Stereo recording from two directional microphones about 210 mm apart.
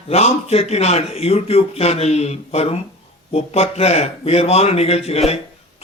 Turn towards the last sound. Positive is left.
turn(degrees=30)  # may be behind; listen again after turning